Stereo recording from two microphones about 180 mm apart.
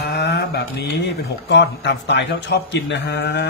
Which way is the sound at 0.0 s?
65° left (ahead or behind).